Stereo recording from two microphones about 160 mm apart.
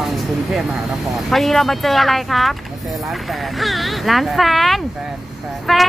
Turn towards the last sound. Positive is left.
turn(degrees=0)  # may be behind; listen again after turning